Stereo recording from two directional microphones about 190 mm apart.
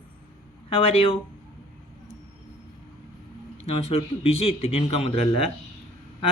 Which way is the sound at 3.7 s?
30° left (ahead or behind).